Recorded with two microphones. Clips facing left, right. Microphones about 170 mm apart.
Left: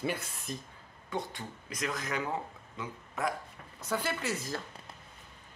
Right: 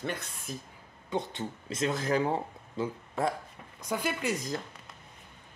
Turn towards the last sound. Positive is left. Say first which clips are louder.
# right 3 dB
turn(degrees=-15)  # may be behind; listen again after turning